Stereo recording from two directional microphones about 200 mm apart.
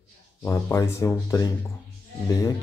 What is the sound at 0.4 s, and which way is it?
Speech, 15° left (ahead or behind).